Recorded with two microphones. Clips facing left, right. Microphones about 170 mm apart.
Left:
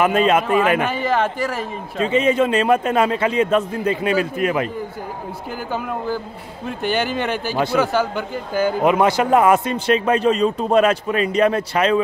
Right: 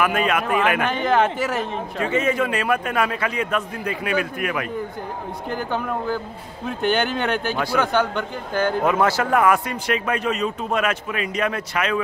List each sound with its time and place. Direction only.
0.0 s a man's voice: 25° left (ahead or behind)
0.8 s speech: 5° left (ahead or behind)
2.0 s a man's voice: 20° left (ahead or behind)
5.7 s speech: 5° left (ahead or behind)
7.5 s a man's voice: 25° left (ahead or behind)
7.8 s speech: 5° left (ahead or behind)
8.8 s a man's voice: 20° left (ahead or behind)